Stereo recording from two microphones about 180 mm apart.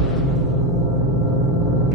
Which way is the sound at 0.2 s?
Centre (ahead or behind).